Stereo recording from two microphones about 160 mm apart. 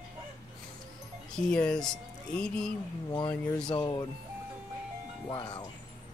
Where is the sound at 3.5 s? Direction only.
5° left (ahead or behind).